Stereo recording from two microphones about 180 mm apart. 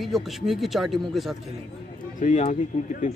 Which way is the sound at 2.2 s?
40° left (ahead or behind).